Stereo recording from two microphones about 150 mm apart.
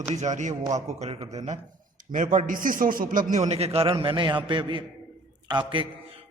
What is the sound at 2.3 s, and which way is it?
A man's voice, 65° right (ahead or behind).